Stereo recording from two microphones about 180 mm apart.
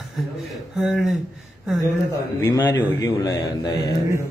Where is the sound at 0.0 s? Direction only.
Centre (ahead or behind).